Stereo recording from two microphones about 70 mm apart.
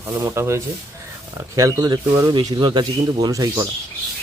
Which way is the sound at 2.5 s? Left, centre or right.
Right.